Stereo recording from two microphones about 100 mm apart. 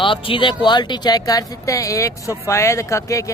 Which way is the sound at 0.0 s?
60° left (ahead or behind).